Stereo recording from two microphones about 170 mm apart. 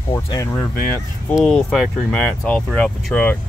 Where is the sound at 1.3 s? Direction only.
Centre (ahead or behind).